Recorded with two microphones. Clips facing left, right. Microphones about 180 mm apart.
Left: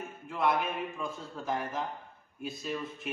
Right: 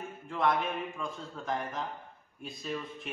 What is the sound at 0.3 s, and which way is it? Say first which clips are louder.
A man's voice: even; 5° left (ahead or behind).